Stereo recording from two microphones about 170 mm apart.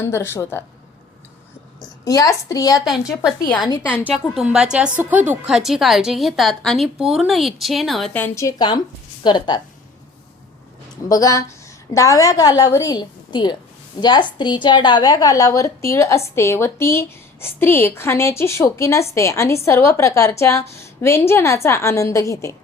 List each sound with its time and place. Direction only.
0.0 s a woman's voice: 15° left (ahead or behind)
1.8 s a woman's voice: 20° left (ahead or behind)
3.8 s a woman's voice: 5° right (ahead or behind); by 9.6 s 25° left (ahead or behind)
11.1 s a woman's voice: 20° left (ahead or behind)